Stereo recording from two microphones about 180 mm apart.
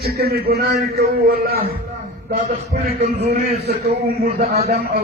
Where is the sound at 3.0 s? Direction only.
65° right (ahead or behind).